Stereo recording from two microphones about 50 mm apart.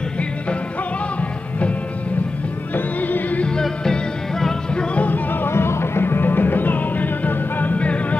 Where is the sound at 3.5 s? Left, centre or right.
Centre.